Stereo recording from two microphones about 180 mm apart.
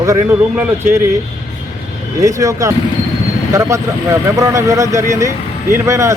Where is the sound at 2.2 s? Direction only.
20° right (ahead or behind).